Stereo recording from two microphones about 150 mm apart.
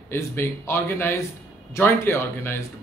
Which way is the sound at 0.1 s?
15° left (ahead or behind).